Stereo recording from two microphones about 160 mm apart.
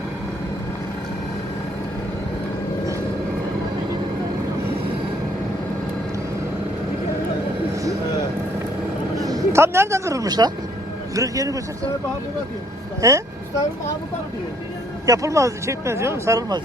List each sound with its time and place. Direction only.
9.2 s a man's voice: 20° right (ahead or behind)
13.0 s a man's voice: 20° right (ahead or behind)
15.0 s a man's voice: 20° right (ahead or behind)